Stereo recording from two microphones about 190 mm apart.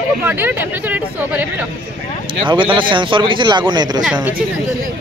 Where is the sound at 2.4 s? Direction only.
25° right (ahead or behind).